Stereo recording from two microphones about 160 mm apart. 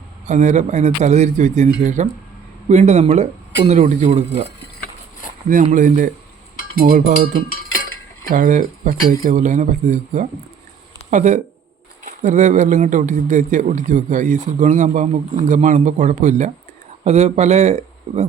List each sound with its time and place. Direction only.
0.3 s speech: 50° right (ahead or behind)
5.7 s speech: 55° right (ahead or behind)
6.7 s speech: 70° right (ahead or behind)
8.3 s speech: 55° right (ahead or behind)